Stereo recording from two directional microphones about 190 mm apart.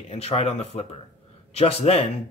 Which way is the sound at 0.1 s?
35° left (ahead or behind).